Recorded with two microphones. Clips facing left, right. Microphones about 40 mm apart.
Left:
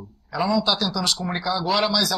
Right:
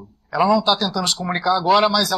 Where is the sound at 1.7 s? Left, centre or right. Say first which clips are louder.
Right 7 dB; right.